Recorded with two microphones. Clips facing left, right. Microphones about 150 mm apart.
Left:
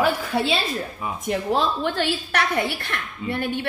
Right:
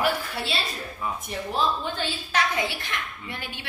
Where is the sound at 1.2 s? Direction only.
90° left.